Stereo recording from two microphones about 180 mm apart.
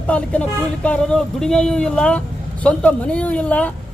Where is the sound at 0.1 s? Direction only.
5° left (ahead or behind).